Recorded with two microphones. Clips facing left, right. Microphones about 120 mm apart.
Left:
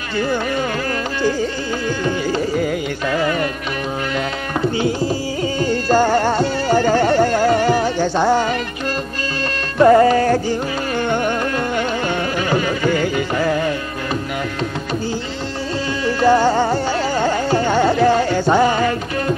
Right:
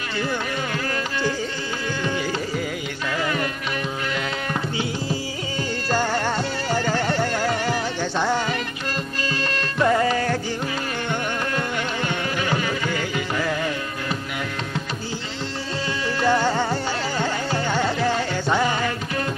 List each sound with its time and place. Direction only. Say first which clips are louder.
2.6 s carnatic music: left 8 dB; 45° left (ahead or behind)
5.9 s music: left 8 dB; 45° left (ahead or behind)
9.8 s music: left 9 dB; 45° left (ahead or behind)
11.1 s carnatic music: left 7 dB; 50° left (ahead or behind)
12.9 s music: left 7 dB; 45° left (ahead or behind)
16.2 s carnatic music: left 7 dB; 40° left (ahead or behind)